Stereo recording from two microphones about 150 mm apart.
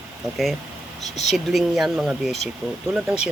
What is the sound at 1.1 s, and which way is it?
Speech, 50° left (ahead or behind).